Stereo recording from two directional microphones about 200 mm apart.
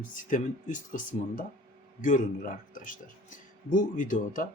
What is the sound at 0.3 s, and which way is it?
Speech, 40° left (ahead or behind).